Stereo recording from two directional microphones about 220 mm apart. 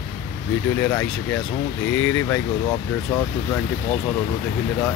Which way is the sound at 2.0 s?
10° left (ahead or behind).